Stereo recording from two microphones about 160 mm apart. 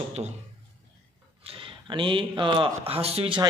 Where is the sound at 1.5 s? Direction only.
30° right (ahead or behind).